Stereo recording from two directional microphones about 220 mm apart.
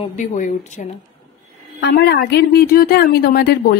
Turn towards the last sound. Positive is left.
turn(degrees=45)  # may be behind; listen again after turning